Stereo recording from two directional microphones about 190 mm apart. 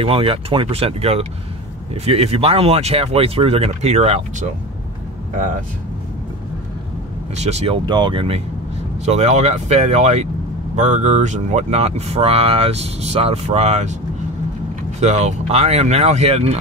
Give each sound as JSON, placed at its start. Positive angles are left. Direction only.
{"t": 0.0, "sound": "speech", "side_deg": -30}
{"t": 7.4, "sound": "speech", "side_deg": -30}
{"t": 15.0, "sound": "speech", "side_deg": -35}